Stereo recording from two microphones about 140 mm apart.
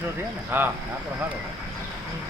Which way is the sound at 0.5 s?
15° right (ahead or behind).